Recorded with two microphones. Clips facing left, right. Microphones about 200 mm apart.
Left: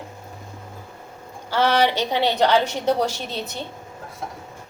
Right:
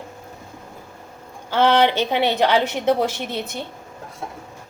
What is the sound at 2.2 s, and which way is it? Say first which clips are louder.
A woman's voice: left 1 dB; 20° right (ahead or behind).